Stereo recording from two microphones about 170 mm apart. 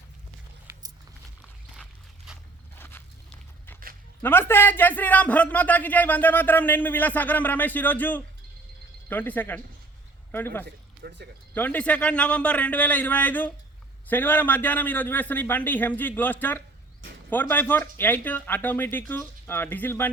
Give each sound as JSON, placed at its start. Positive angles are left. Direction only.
{"t": 1.7, "sound": "dog", "side_deg": -5}
{"t": 2.7, "sound": "walk", "side_deg": 15}
{"t": 4.2, "sound": "a man's voice", "side_deg": 10}
{"t": 10.7, "sound": "a sound", "side_deg": -80}
{"t": 11.5, "sound": "a man's voice", "side_deg": 10}